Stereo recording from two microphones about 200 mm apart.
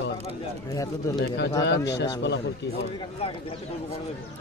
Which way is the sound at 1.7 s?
55° left (ahead or behind).